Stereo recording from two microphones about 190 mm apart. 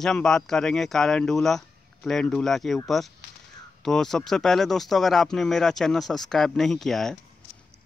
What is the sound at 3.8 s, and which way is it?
Speech, centre (ahead or behind).